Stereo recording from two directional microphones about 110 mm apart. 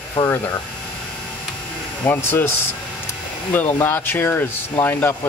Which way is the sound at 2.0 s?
20° left (ahead or behind).